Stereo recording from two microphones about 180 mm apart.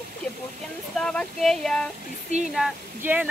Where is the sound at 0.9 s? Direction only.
5° left (ahead or behind).